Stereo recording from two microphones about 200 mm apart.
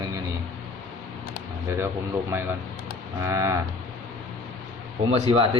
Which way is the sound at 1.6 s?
10° right (ahead or behind).